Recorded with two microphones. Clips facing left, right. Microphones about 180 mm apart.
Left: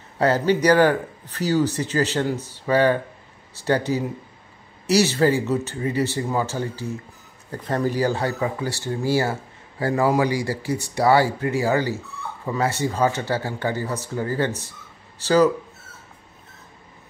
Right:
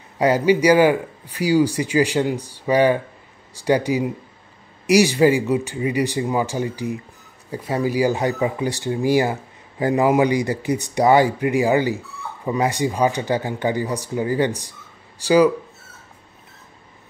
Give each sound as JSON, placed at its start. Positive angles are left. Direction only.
{"t": 0.2, "sound": "speech", "side_deg": -10}